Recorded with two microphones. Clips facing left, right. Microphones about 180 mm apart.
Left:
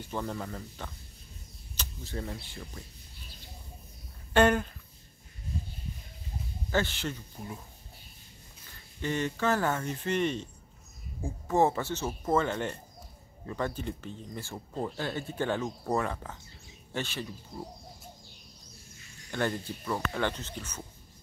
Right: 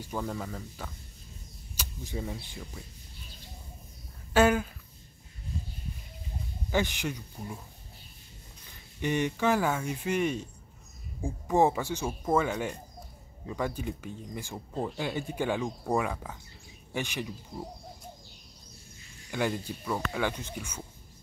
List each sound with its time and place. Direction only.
0.0 s speech: 5° right (ahead or behind)
4.3 s speech: 5° right (ahead or behind)
6.7 s speech: 15° right (ahead or behind)
9.0 s speech: 15° right (ahead or behind)
19.3 s speech: 10° right (ahead or behind)